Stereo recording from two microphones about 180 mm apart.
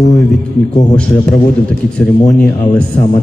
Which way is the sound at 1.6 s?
5° left (ahead or behind).